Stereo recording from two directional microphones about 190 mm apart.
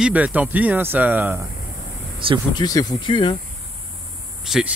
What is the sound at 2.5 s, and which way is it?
Speech, 20° left (ahead or behind).